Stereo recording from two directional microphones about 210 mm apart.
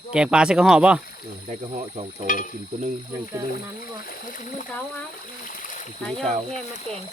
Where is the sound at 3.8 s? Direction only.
40° left (ahead or behind).